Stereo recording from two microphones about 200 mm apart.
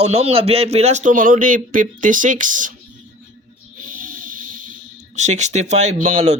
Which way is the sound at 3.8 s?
45° right (ahead or behind).